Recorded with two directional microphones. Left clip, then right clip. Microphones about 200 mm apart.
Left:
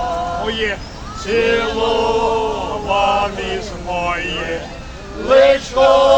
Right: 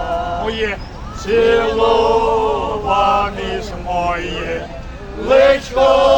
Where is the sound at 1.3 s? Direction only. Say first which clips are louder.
Right 3 dB; 50° right (ahead or behind).